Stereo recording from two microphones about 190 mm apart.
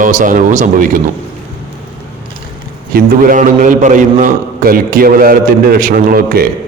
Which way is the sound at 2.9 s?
45° right (ahead or behind).